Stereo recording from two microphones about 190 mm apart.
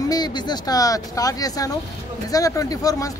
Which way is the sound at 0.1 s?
20° left (ahead or behind).